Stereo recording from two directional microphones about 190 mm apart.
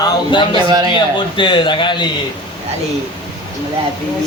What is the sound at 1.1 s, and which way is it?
Speech, 25° left (ahead or behind).